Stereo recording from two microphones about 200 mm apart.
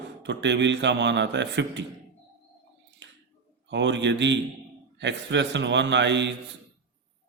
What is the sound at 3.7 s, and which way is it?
Speech, 65° right (ahead or behind).